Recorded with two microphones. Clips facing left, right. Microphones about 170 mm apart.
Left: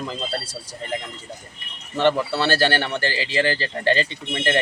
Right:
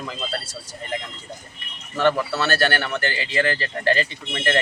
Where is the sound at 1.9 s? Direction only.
25° left (ahead or behind).